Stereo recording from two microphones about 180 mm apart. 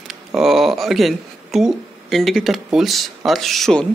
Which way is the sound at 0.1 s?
Centre (ahead or behind).